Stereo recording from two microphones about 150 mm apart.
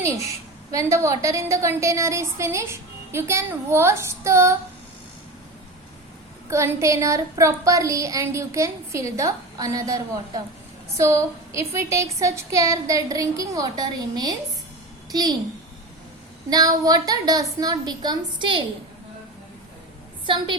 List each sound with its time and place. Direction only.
0.3 s a woman's voice: 20° right (ahead or behind)
6.5 s a woman's voice: 20° right (ahead or behind)
16.5 s a woman's voice: 25° right (ahead or behind)
20.2 s a woman's voice: 35° right (ahead or behind)